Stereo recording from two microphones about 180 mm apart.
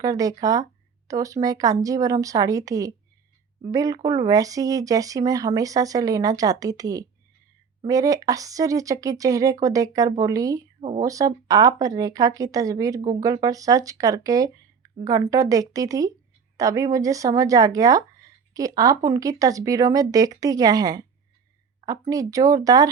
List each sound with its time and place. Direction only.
0.0 s speech: 20° right (ahead or behind)
10.8 s speech: 35° right (ahead or behind)
11.0 s speech: 20° right (ahead or behind)